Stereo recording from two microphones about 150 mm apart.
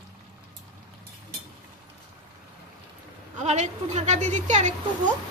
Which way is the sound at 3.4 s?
50° right (ahead or behind).